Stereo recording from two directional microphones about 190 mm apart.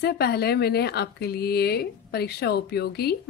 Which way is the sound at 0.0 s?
55° left (ahead or behind).